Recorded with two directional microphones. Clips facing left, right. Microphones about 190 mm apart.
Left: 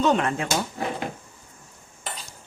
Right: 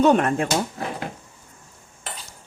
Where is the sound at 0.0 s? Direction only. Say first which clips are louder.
Right 4 dB; 55° right (ahead or behind).